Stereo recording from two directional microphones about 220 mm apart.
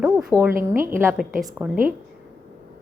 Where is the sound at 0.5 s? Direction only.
40° right (ahead or behind).